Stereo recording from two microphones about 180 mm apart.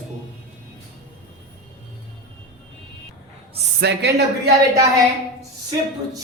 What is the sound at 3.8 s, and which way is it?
Speech, 70° right (ahead or behind).